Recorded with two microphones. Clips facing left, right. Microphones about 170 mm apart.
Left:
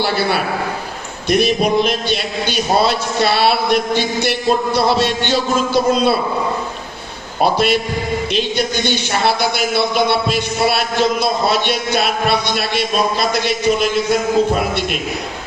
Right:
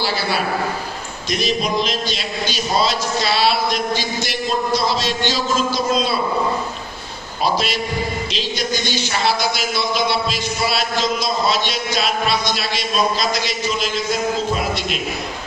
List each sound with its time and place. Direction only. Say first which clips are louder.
0.0 s speech: left 4 dB; 60° left (ahead or behind)
7.4 s speech: left 5 dB; 60° left (ahead or behind)